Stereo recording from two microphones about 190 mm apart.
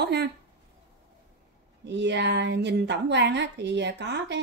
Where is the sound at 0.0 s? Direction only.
60° right (ahead or behind).